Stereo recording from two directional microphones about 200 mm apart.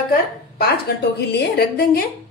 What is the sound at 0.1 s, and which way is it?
A woman's voice, 50° left (ahead or behind).